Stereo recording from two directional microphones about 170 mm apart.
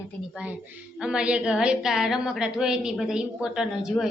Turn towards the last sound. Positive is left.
turn(degrees=-5)  # may be behind; listen again after turning